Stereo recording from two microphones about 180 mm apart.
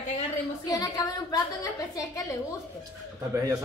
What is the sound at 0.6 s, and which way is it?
A woman's voice, 20° left (ahead or behind).